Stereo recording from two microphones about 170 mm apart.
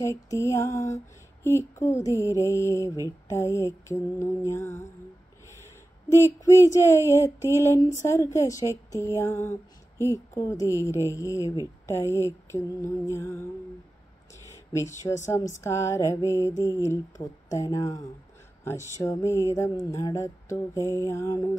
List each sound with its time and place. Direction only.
0.3 s speech: 20° left (ahead or behind)
14.7 s speech: 15° left (ahead or behind)